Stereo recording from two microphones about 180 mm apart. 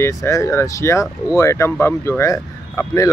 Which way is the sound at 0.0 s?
15° left (ahead or behind).